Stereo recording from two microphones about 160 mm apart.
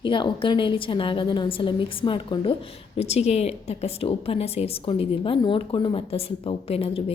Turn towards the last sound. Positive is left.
turn(degrees=35)  # may be behind; listen again after turning